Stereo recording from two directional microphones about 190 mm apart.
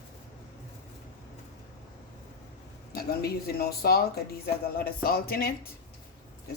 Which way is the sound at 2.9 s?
55° left (ahead or behind).